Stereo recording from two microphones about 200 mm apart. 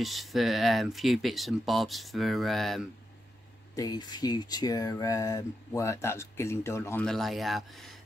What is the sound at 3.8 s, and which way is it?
Speech, 20° left (ahead or behind).